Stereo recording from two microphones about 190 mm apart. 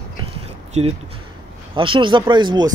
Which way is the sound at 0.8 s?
35° right (ahead or behind).